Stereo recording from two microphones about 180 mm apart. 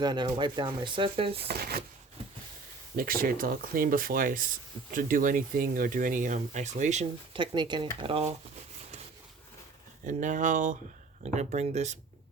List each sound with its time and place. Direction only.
0.0 s speech: 25° right (ahead or behind)
1.4 s speech: 60° right (ahead or behind)
2.9 s speech: 55° right (ahead or behind)
7.3 s speech: 25° right (ahead or behind)
10.0 s speech: 45° right (ahead or behind)